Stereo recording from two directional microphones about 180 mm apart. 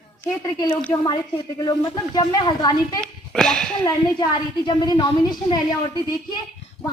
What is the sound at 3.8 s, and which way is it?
Speech, 25° left (ahead or behind).